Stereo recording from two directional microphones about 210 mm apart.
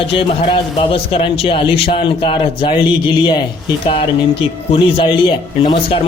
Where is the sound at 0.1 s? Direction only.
25° left (ahead or behind).